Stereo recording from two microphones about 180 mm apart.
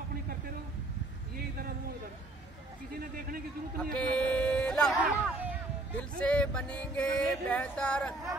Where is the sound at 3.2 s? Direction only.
50° right (ahead or behind).